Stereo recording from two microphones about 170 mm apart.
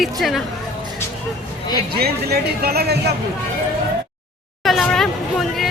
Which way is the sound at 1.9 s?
65° right (ahead or behind).